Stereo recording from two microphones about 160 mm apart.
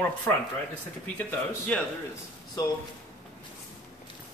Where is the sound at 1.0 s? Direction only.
10° left (ahead or behind).